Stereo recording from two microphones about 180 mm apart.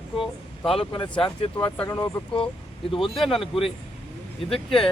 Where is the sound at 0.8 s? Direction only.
30° left (ahead or behind).